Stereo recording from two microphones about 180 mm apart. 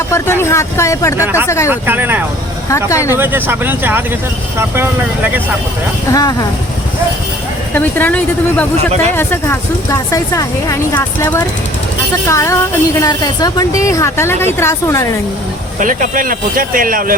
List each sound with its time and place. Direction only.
0.1 s speech: 15° left (ahead or behind)
1.7 s speech: 10° right (ahead or behind)
2.6 s speech: 15° left (ahead or behind)
3.2 s speech: 10° right (ahead or behind)
6.1 s speech: 20° left (ahead or behind)
7.7 s speech: 10° left (ahead or behind)
15.8 s speech: 45° right (ahead or behind)